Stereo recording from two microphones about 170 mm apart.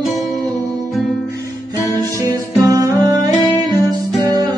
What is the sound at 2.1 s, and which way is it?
Music, 20° right (ahead or behind).